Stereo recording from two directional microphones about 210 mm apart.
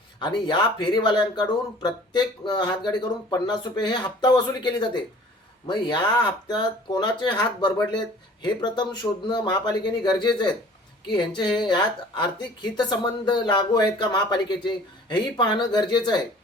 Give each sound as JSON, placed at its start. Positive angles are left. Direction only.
{"t": 0.2, "sound": "a woman's voice", "side_deg": 20}